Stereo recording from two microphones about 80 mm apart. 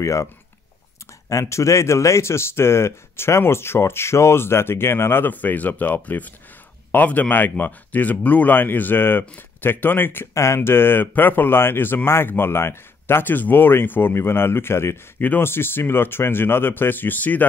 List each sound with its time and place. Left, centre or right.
0.0 s speech: left
1.3 s speech: left
10.3 s speech: left